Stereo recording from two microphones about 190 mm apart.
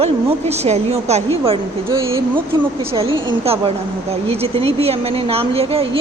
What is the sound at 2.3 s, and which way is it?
A woman's voice, 30° right (ahead or behind).